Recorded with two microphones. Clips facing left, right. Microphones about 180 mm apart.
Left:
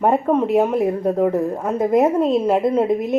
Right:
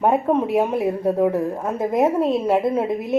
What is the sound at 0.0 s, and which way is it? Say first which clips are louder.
Speech: left 1 dB; 5° right (ahead or behind).